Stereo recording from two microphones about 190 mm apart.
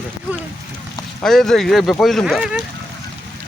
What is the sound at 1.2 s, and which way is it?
Speech, centre (ahead or behind).